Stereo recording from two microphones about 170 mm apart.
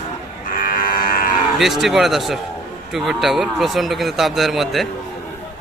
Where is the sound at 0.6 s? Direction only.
55° left (ahead or behind).